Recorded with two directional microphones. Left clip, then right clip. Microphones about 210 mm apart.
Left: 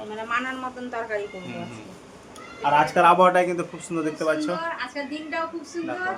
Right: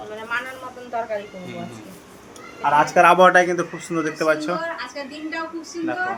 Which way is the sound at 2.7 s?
5° left (ahead or behind).